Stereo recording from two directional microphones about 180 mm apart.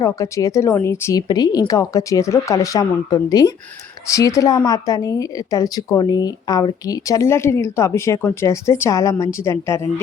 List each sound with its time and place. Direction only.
0.0 s a woman's voice: 20° left (ahead or behind)